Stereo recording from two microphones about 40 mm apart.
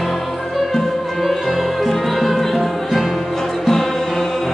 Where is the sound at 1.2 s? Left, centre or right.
Centre.